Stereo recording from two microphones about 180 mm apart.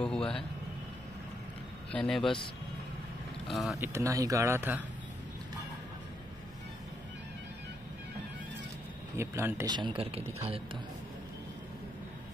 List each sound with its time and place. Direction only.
0.0 s speech: 5° left (ahead or behind)
1.9 s speech: 5° left (ahead or behind)
3.4 s speech: centre (ahead or behind)
3.8 s speech: 15° right (ahead or behind)
9.1 s speech: 15° right (ahead or behind)